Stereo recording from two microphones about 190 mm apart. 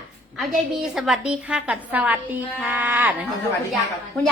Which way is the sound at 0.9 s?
5° right (ahead or behind).